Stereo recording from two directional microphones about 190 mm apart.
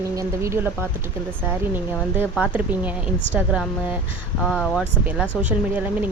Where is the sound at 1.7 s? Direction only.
10° right (ahead or behind).